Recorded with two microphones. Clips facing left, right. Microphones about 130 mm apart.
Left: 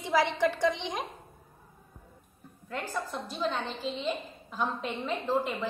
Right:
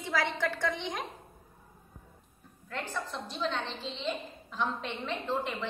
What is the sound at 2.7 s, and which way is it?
A woman's voice, 10° left (ahead or behind).